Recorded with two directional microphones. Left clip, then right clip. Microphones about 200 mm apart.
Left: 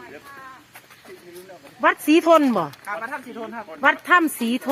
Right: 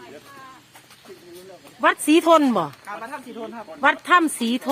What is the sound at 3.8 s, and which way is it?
Speech, centre (ahead or behind).